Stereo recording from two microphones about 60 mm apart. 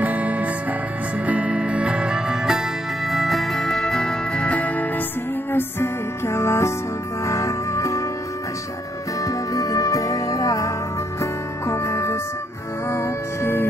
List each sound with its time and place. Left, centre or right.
0.0 s music: right; by 2.6 s centre
3.1 s music: centre; by 5.0 s left
5.5 s music: left
7.2 s music: left
9.2 s music: left
11.1 s music: left